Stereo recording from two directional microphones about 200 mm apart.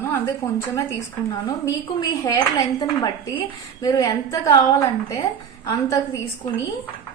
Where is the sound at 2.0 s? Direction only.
20° left (ahead or behind).